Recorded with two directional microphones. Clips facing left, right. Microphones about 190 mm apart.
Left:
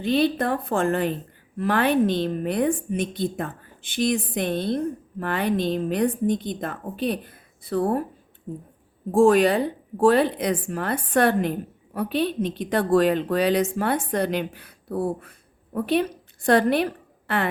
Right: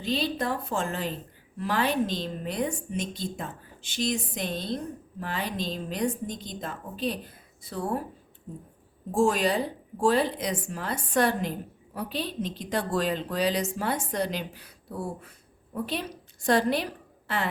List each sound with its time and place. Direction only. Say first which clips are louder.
0.0 s a woman's voice: left 7 dB; 55° left (ahead or behind)
9.1 s a woman's voice: left 7 dB; 60° left (ahead or behind)